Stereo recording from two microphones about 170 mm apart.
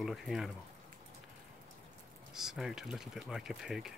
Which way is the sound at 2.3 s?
Centre (ahead or behind).